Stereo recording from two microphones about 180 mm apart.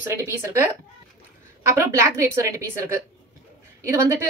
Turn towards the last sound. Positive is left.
turn(degrees=-15)  # may be behind; listen again after turning